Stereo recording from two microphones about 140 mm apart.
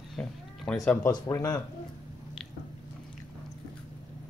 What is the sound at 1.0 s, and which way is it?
Speech, 25° left (ahead or behind).